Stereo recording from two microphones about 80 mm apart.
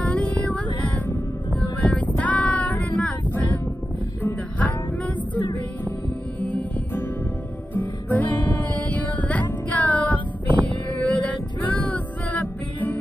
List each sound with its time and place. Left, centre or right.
0.1 s music: centre
1.6 s child singing: centre
4.2 s music: centre
7.7 s music: left